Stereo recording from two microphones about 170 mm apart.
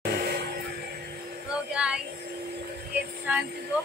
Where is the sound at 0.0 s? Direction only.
65° right (ahead or behind).